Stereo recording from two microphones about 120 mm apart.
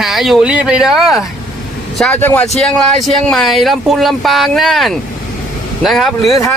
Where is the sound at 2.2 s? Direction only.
15° left (ahead or behind).